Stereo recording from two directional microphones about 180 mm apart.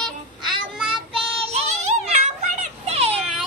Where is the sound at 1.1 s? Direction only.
35° right (ahead or behind).